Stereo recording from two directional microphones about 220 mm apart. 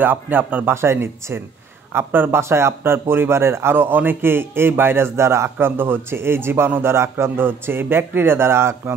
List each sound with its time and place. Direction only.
0.0 s speech: 10° right (ahead or behind)